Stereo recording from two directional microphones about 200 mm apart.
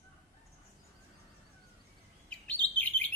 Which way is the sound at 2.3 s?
5° left (ahead or behind).